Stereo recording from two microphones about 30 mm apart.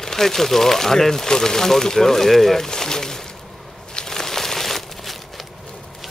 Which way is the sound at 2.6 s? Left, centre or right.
Left.